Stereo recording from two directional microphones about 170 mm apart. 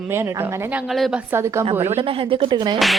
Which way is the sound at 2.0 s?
30° right (ahead or behind).